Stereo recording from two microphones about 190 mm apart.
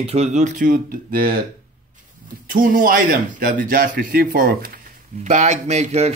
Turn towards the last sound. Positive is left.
turn(degrees=-35)  # may be behind; listen again after turning